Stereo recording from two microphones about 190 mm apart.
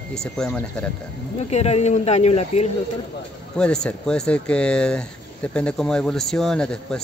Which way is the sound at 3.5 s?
5° left (ahead or behind).